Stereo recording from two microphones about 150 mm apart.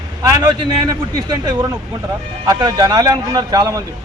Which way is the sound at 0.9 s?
30° right (ahead or behind).